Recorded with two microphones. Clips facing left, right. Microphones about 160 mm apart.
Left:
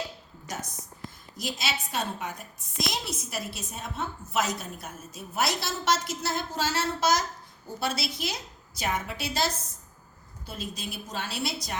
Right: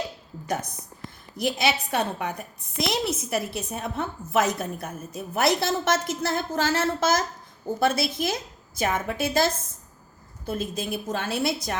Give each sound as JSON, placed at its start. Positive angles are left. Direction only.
{"t": 0.4, "sound": "a woman's voice", "side_deg": -55}